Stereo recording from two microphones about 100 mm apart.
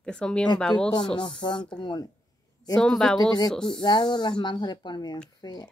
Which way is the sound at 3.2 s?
45° left (ahead or behind).